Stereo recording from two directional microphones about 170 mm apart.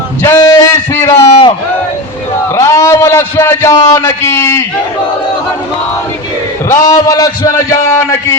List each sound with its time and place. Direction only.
0.2 s a man's voice: 20° left (ahead or behind)
2.6 s a man's voice: 20° left (ahead or behind)
6.8 s a man's voice: 20° left (ahead or behind)